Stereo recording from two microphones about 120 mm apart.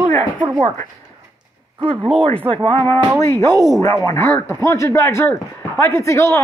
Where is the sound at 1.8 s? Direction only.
50° right (ahead or behind).